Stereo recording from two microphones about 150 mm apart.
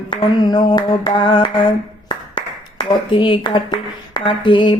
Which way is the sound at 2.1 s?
35° left (ahead or behind).